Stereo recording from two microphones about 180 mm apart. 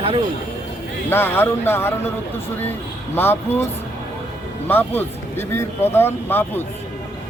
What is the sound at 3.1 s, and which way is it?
Speech, 10° left (ahead or behind).